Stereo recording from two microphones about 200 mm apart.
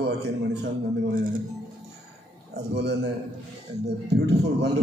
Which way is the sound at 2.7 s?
55° right (ahead or behind).